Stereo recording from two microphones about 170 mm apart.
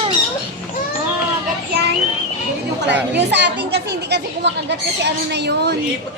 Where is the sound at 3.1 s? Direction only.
90° right.